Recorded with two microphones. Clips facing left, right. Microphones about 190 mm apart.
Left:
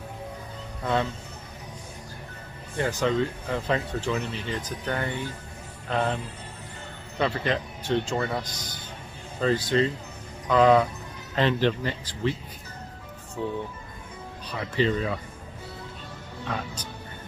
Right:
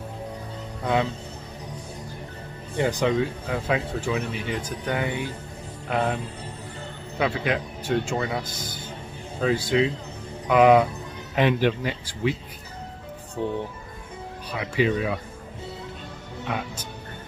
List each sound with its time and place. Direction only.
2.8 s speech: 15° right (ahead or behind)
7.2 s speech: 5° right (ahead or behind)
13.4 s speech: 20° right (ahead or behind)
16.5 s speech: 10° right (ahead or behind)